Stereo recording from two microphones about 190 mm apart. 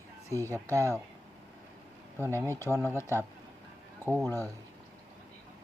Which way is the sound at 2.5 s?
10° left (ahead or behind).